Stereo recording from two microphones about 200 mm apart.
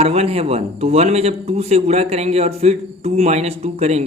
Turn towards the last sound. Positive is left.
turn(degrees=-30)  # may be behind; listen again after turning